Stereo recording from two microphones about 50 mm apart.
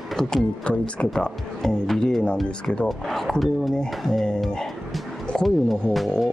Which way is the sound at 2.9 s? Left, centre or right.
Centre.